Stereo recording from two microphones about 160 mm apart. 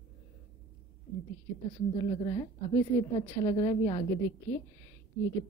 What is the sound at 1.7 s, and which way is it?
Speech, 40° left (ahead or behind).